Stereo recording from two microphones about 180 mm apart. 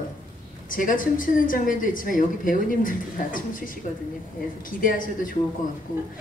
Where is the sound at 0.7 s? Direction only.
50° left (ahead or behind).